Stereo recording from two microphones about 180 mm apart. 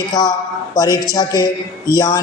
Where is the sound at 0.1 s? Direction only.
25° left (ahead or behind).